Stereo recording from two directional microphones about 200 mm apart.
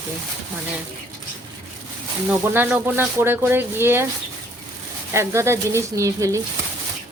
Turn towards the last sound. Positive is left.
turn(degrees=-15)  # may be behind; listen again after turning